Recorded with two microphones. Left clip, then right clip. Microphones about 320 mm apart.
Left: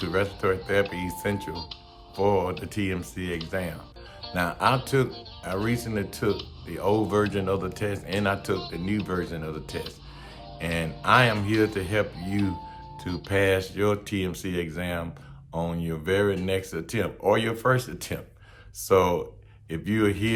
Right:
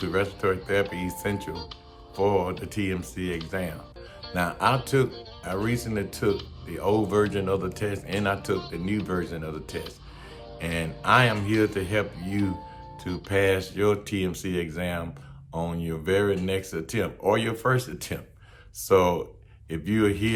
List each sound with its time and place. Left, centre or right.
0.0 s speech: centre